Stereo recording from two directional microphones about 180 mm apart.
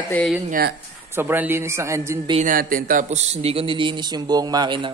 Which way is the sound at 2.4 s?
50° right (ahead or behind).